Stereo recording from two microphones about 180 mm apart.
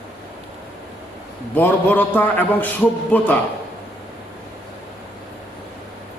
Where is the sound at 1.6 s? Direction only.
10° left (ahead or behind).